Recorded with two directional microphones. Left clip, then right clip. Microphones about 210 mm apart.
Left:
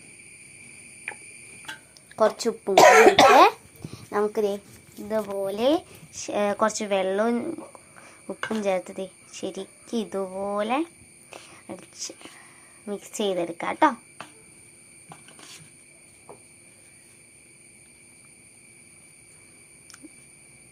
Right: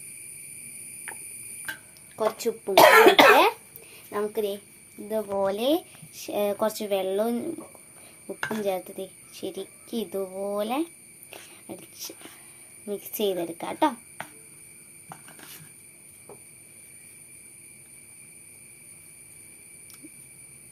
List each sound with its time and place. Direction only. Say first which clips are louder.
2.1 s speech: left 4 dB; 15° left (ahead or behind)
2.7 s cough: left 1 dB; 35° right (ahead or behind)
4.1 s speech: left 4 dB; 10° left (ahead or behind)